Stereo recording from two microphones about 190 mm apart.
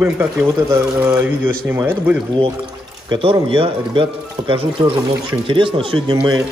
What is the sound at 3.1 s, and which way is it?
Speech, 30° right (ahead or behind).